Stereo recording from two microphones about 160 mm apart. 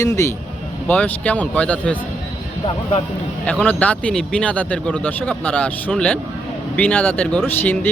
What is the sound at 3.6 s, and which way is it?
Speech, 10° left (ahead or behind).